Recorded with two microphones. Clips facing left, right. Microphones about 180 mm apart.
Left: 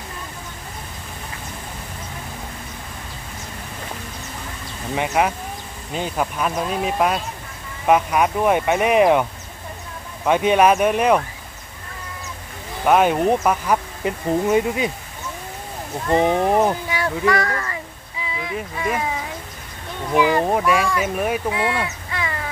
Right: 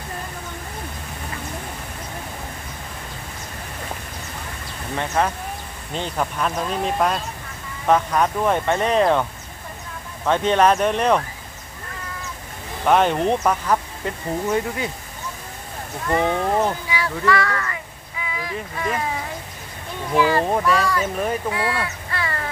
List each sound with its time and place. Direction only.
4.9 s speech: 15° left (ahead or behind)
10.2 s speech: 10° left (ahead or behind)
12.8 s speech: 5° left (ahead or behind)
16.1 s speech: 20° left (ahead or behind)
17.3 s speech: 40° left (ahead or behind)
18.8 s speech: 10° left (ahead or behind)
20.2 s speech: 15° left (ahead or behind)
21.5 s crow: 20° left (ahead or behind)